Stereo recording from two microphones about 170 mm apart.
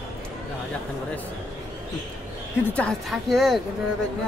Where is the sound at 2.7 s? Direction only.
5° left (ahead or behind).